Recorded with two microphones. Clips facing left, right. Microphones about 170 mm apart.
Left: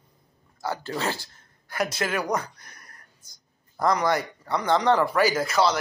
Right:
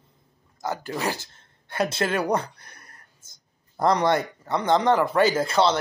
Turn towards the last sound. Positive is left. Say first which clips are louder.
# right 2 dB
turn(degrees=-30)  # may be behind; listen again after turning